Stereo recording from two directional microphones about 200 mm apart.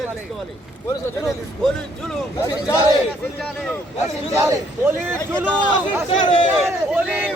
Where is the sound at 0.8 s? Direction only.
15° left (ahead or behind).